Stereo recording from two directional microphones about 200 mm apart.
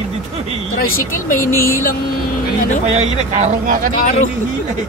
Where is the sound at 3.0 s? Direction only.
35° right (ahead or behind).